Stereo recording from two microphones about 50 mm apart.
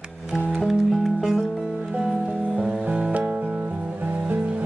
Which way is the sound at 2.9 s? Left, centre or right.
Right.